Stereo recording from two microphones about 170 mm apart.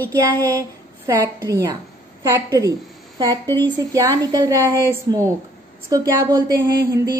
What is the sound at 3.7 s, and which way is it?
Speech, 20° right (ahead or behind).